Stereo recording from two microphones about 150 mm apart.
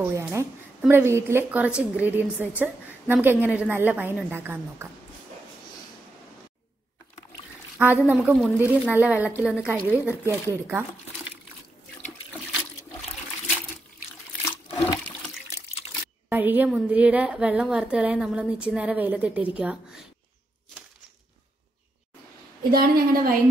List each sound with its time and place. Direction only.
0.0 s a woman's voice: 20° right (ahead or behind)
7.8 s a woman's voice: 10° right (ahead or behind)
16.3 s a woman's voice: 10° right (ahead or behind)
22.7 s a woman's voice: 80° right